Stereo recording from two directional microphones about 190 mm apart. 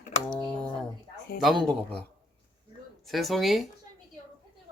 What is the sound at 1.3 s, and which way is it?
Speech, 50° left (ahead or behind).